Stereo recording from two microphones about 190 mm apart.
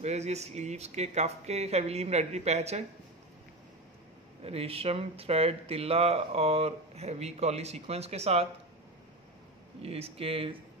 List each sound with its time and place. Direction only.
0.0 s speech: 35° right (ahead or behind)
4.4 s speech: 30° right (ahead or behind)
9.8 s speech: 30° right (ahead or behind)